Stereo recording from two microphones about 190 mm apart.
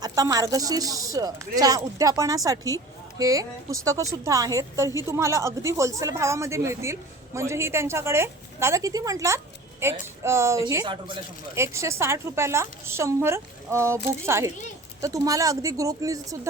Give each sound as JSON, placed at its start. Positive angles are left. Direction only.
{"t": 0.0, "sound": "a woman's voice", "side_deg": -20}